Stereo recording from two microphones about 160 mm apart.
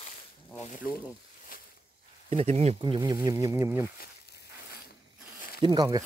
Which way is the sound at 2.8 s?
30° right (ahead or behind).